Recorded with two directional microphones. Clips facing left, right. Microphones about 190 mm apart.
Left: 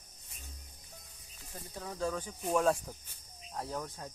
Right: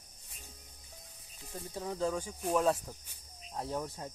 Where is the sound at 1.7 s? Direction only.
20° right (ahead or behind).